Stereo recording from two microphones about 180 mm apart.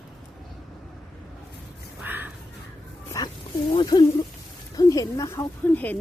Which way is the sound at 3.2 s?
20° left (ahead or behind).